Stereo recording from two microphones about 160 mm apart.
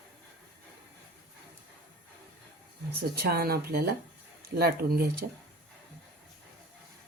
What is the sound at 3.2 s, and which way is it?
Speech, 75° right (ahead or behind).